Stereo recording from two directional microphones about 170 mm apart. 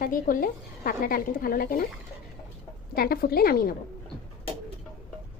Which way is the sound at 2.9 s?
60° left (ahead or behind).